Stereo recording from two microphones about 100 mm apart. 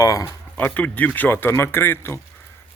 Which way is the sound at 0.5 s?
15° left (ahead or behind).